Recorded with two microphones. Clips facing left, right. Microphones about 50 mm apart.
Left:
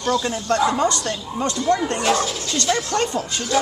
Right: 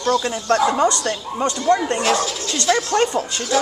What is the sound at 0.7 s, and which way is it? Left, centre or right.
Speech, centre.